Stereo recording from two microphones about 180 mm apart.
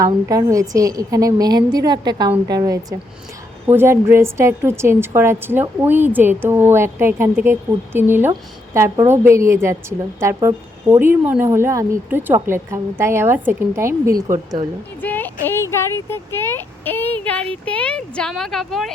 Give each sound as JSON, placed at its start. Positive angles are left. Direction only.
{"t": 0.0, "sound": "a woman's voice", "side_deg": -20}
{"t": 15.0, "sound": "a sound", "side_deg": 10}
{"t": 15.7, "sound": "speech", "side_deg": 15}